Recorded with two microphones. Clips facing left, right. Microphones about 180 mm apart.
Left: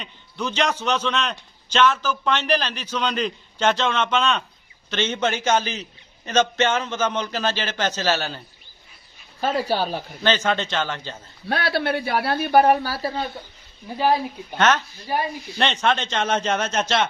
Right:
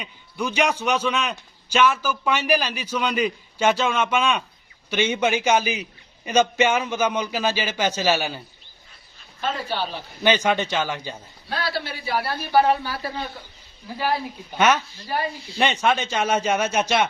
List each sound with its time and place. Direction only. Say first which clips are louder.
0.0 s a man's voice: right 1 dB; 10° right (ahead or behind)
9.4 s speech: left 4 dB; 40° left (ahead or behind)
10.2 s a man's voice: right 2 dB; 15° right (ahead or behind)
11.4 s speech: left 5 dB; 60° left (ahead or behind)
12.8 s speech: left 3 dB; 35° left (ahead or behind)
14.6 s a man's voice: even; 10° right (ahead or behind)